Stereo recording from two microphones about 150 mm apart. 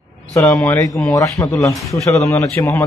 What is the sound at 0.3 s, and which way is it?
Speech, 10° left (ahead or behind).